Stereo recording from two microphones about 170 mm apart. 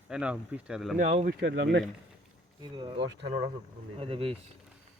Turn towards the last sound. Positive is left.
turn(degrees=-35)  # may be behind; listen again after turning